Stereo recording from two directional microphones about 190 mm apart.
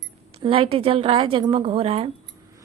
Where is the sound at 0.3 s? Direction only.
30° right (ahead or behind).